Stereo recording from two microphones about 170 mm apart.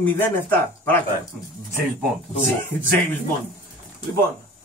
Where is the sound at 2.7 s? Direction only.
10° left (ahead or behind).